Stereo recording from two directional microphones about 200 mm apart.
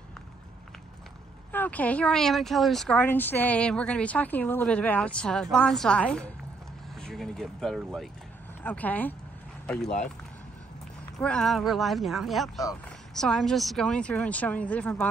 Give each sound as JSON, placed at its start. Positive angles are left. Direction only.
{"t": 1.5, "sound": "speech", "side_deg": 10}
{"t": 11.1, "sound": "speech", "side_deg": 5}